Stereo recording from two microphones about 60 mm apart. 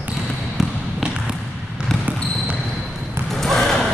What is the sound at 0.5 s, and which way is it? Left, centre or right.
Trickle, centre.